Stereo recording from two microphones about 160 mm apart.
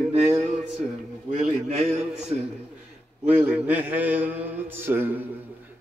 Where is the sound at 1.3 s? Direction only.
45° right (ahead or behind).